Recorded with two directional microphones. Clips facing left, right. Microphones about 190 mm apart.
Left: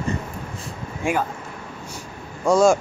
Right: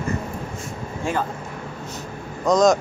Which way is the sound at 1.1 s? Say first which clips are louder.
Left 2 dB; 15° left (ahead or behind).